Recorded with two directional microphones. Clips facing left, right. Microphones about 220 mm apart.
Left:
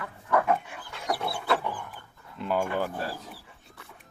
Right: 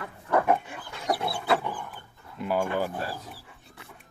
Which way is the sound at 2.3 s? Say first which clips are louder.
Right 1 dB; 10° right (ahead or behind).